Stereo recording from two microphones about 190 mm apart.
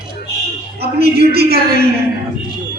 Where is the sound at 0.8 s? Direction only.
55° right (ahead or behind).